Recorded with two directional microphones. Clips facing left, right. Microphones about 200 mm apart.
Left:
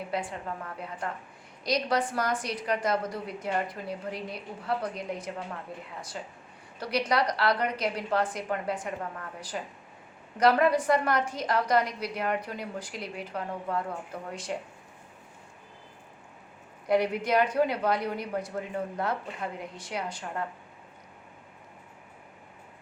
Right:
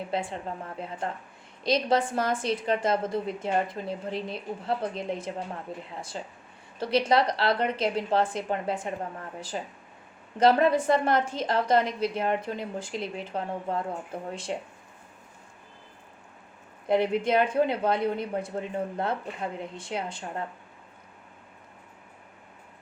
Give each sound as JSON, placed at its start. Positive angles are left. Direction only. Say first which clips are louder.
{"t": 0.1, "sound": "a woman's voice", "louder": "right 2 dB", "side_deg": -25}
{"t": 16.8, "sound": "a woman's voice", "louder": "right 2 dB", "side_deg": -25}